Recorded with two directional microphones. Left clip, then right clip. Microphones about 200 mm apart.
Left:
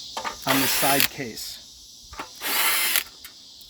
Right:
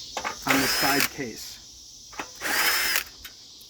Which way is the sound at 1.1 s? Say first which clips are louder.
Left 1 dB; 45° left (ahead or behind).